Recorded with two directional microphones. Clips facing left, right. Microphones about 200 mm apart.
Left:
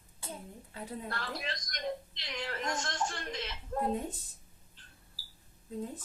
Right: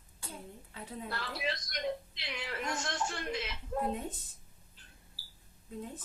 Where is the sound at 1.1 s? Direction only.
5° right (ahead or behind).